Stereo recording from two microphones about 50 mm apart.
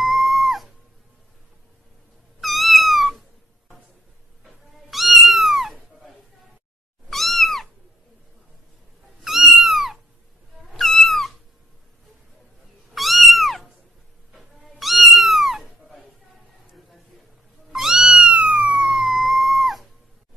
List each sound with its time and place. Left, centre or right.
0.0 s music: centre
2.4 s cat: centre
4.9 s cat: centre
9.2 s cat: centre
12.9 s cat: centre
17.7 s cat: centre
18.1 s cat: right
18.6 s music: centre